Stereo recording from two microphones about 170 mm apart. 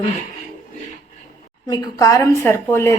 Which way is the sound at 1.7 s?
20° left (ahead or behind).